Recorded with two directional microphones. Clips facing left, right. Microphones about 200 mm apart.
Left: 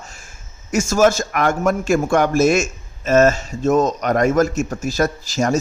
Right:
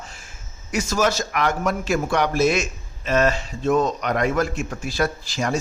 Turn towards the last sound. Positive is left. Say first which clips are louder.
# left 5 dB
turn(degrees=45)  # may be behind; listen again after turning